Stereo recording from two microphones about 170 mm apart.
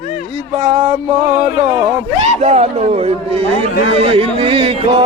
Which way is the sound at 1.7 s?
20° right (ahead or behind).